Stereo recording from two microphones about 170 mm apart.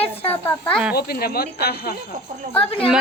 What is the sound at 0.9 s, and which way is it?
Speech, 65° left (ahead or behind).